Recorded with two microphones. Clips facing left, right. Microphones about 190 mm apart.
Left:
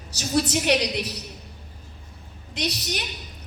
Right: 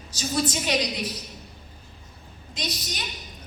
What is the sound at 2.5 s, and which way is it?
Speech, 65° left (ahead or behind).